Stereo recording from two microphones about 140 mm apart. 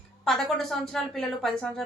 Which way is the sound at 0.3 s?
Centre (ahead or behind).